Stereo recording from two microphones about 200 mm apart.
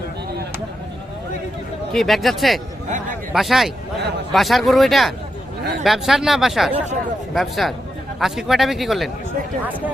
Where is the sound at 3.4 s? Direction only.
Centre (ahead or behind).